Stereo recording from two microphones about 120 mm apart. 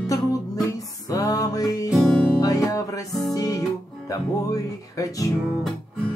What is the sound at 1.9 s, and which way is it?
Music, centre (ahead or behind).